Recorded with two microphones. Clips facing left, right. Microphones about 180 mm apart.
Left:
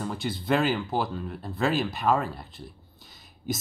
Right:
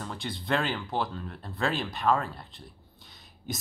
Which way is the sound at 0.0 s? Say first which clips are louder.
Left 5 dB; 5° left (ahead or behind).